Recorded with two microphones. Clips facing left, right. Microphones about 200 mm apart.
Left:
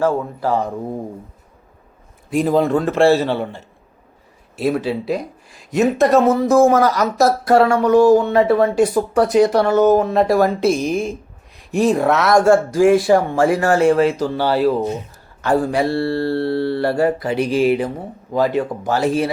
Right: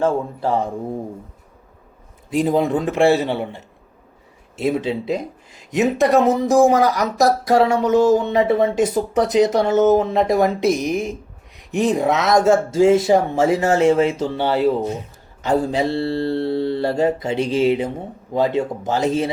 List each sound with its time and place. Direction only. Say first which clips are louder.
0.0 s speech: left 1 dB; 25° right (ahead or behind)
2.4 s a man's voice: left 2 dB; 15° right (ahead or behind)